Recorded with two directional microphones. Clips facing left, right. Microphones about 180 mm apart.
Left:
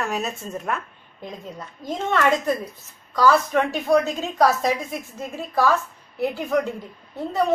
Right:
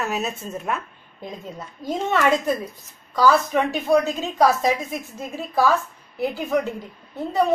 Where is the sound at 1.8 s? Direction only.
5° right (ahead or behind).